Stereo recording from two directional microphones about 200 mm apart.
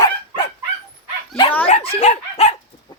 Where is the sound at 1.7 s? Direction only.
30° left (ahead or behind).